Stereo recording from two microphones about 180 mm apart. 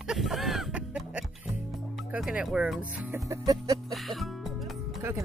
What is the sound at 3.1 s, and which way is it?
Music, 20° right (ahead or behind).